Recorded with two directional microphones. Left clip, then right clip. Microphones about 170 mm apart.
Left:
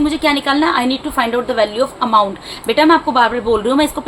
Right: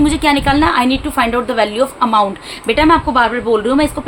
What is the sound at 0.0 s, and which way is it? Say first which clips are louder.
A woman's voice: right 2 dB; 35° right (ahead or behind).